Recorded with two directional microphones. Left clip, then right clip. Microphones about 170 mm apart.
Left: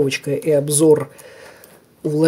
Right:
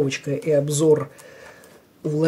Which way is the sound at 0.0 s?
30° left (ahead or behind).